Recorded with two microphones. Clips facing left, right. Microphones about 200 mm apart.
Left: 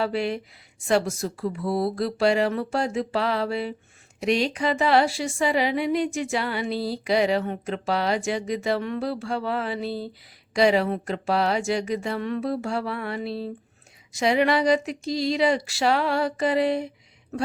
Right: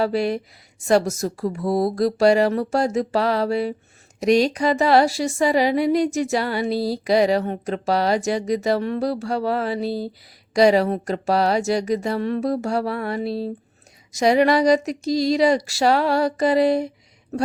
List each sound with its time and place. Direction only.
0.0 s a woman's voice: 40° right (ahead or behind)